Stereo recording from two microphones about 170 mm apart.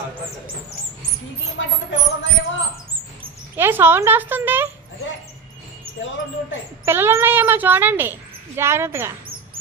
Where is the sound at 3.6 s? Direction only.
15° right (ahead or behind).